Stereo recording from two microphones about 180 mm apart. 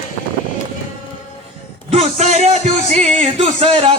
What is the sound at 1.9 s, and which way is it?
Speech, 35° right (ahead or behind).